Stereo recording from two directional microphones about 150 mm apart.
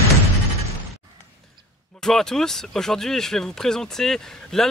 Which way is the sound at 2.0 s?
5° left (ahead or behind).